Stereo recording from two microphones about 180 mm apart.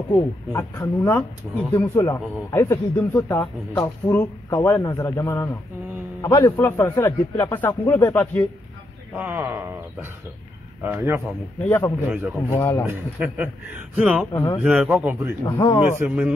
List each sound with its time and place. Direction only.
0.1 s a man's voice: 15° left (ahead or behind)
1.5 s speech: 10° right (ahead or behind)
2.0 s a man's voice: 15° left (ahead or behind)
9.1 s speech: 10° right (ahead or behind)
11.6 s a man's voice: 15° left (ahead or behind)
12.1 s speech: 10° right (ahead or behind)
12.4 s a man's voice: 15° left (ahead or behind)
12.8 s speech: 10° right (ahead or behind)
14.3 s speech: 20° left (ahead or behind)
14.6 s speech: 10° right (ahead or behind)
15.5 s a man's voice: 15° left (ahead or behind)
16.0 s speech: 5° right (ahead or behind)